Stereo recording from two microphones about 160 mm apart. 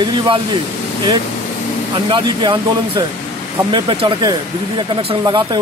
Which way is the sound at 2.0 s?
30° right (ahead or behind).